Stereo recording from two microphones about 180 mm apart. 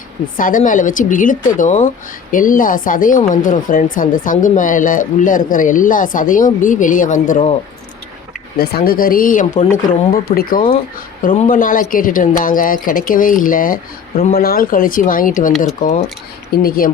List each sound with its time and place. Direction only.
0.3 s speech: 50° left (ahead or behind)
8.5 s speech: 60° left (ahead or behind)